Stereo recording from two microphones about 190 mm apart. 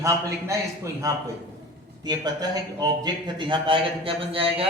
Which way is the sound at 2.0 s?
20° right (ahead or behind).